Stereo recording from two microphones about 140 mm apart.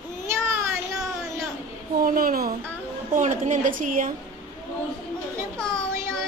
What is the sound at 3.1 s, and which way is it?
Speech, 60° right (ahead or behind).